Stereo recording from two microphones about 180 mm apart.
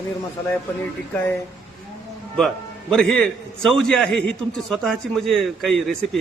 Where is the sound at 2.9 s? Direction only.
5° left (ahead or behind).